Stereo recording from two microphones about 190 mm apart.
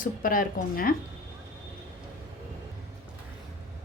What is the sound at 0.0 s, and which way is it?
Speech, 50° left (ahead or behind).